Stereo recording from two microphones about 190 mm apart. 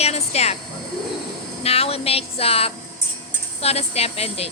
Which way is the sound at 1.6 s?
30° left (ahead or behind).